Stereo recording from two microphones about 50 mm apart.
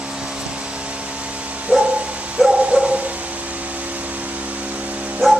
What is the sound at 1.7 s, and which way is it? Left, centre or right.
Dog, right.